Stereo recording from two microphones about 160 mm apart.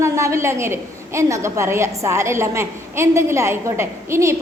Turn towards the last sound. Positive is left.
turn(degrees=-15)  # may be behind; listen again after turning